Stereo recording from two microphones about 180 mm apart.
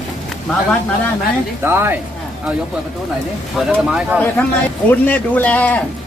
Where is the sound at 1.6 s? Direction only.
10° right (ahead or behind).